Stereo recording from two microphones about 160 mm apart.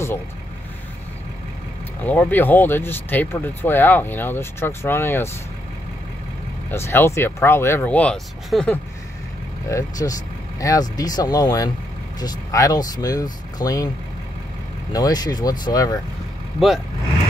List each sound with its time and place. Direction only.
2.0 s speech: 10° left (ahead or behind)
6.7 s speech: 15° left (ahead or behind)
9.7 s speech: 20° left (ahead or behind)
14.9 s speech: 25° left (ahead or behind)
16.5 s speech: centre (ahead or behind)